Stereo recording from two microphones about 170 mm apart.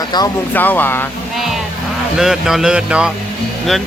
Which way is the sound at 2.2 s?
Centre (ahead or behind).